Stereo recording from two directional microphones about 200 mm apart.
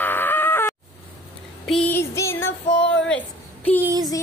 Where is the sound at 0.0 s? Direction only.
10° left (ahead or behind).